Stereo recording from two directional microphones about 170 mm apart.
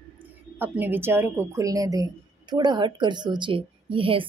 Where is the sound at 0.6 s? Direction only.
10° right (ahead or behind).